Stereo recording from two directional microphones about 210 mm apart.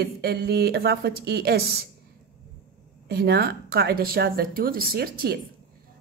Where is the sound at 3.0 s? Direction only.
50° right (ahead or behind).